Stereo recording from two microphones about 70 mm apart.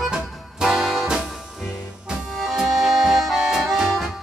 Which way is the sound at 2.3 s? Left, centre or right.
Centre.